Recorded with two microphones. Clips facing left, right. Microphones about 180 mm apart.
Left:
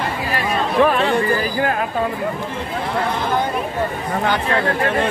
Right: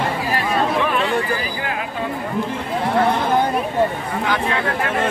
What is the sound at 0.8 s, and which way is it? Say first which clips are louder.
Chatter: left 4 dB; 40° left (ahead or behind).